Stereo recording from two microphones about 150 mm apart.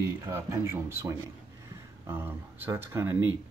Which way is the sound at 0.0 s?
20° right (ahead or behind).